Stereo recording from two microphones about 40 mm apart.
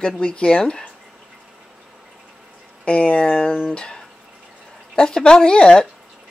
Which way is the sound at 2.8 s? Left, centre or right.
Left.